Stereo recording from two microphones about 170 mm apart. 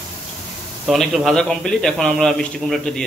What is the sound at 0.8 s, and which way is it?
A man's voice, centre (ahead or behind).